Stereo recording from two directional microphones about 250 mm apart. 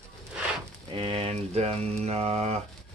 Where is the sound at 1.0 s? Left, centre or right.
Right.